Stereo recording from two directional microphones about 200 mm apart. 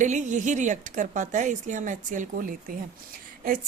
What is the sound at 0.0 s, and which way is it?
A woman's voice, 40° right (ahead or behind).